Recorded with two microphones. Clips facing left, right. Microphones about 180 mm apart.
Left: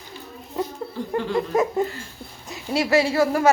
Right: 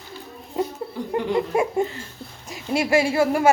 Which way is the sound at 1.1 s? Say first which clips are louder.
Even; 15° right (ahead or behind).